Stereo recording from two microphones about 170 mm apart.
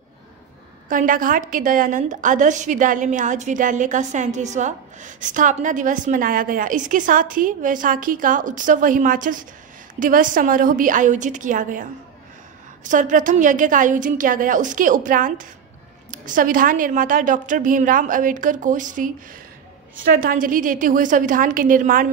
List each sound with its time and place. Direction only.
0.8 s a woman's voice: 50° right (ahead or behind)